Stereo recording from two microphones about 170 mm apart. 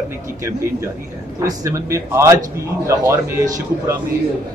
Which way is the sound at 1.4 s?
20° right (ahead or behind).